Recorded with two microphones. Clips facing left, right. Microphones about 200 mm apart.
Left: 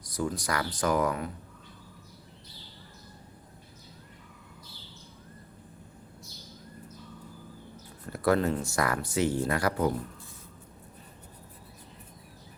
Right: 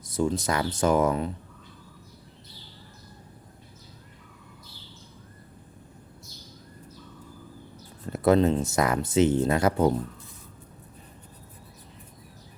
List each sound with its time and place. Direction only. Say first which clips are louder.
0.0 s speech: right 6 dB; 25° right (ahead or behind)
8.0 s speech: right 5 dB; 20° right (ahead or behind)